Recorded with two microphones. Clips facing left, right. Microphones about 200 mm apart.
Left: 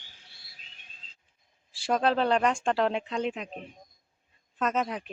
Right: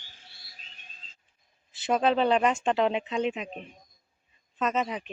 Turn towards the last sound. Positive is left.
turn(degrees=0)  # may be behind; listen again after turning